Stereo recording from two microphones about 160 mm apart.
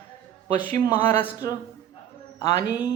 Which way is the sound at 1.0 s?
10° left (ahead or behind).